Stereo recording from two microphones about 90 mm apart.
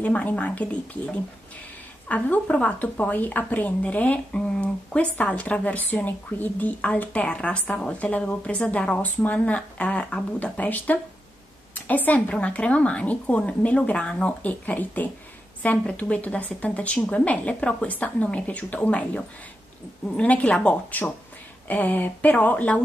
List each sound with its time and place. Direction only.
0.0 s a woman's voice: 20° left (ahead or behind)